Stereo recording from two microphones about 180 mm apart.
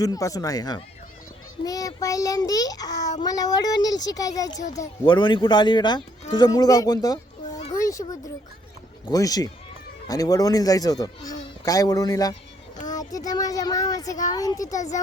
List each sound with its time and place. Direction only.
0.0 s speech: 20° left (ahead or behind)
7.6 s a sound: 20° left (ahead or behind)
9.0 s speech: 20° left (ahead or behind)
14.7 s speech: 45° left (ahead or behind)